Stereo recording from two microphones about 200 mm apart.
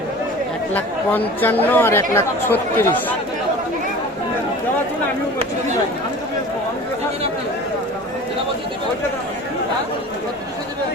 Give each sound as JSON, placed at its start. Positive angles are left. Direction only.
{"t": 0.7, "sound": "speech", "side_deg": 10}